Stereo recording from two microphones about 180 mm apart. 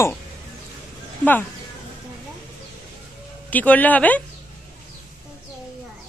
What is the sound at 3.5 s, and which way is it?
Speech, 10° left (ahead or behind).